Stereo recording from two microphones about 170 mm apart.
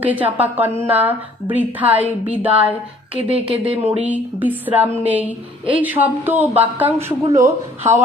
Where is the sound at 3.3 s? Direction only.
35° right (ahead or behind).